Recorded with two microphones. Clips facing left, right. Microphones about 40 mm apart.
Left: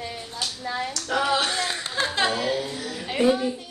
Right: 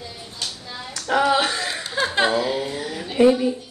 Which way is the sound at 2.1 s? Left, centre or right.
Centre.